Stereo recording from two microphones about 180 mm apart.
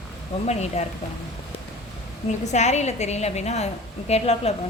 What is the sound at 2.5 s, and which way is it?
A woman's voice, 40° left (ahead or behind).